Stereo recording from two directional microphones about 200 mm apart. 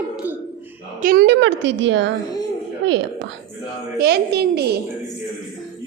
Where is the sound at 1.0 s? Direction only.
50° right (ahead or behind); by 2.1 s 65° right (ahead or behind).